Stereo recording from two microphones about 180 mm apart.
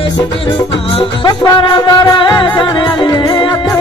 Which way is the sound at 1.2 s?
25° left (ahead or behind).